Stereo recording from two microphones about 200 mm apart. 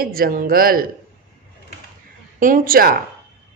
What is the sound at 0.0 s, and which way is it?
Speech, 45° right (ahead or behind).